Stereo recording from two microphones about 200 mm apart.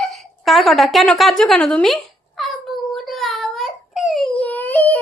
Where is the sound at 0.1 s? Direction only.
Centre (ahead or behind).